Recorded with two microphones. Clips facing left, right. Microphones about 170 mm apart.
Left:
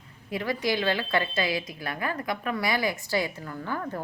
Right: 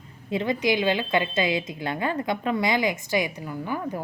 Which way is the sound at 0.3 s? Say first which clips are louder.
Right 4 dB; 20° right (ahead or behind).